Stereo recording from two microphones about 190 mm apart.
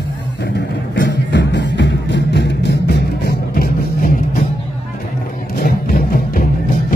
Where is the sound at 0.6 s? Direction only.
70° left (ahead or behind); by 4.1 s 50° left (ahead or behind).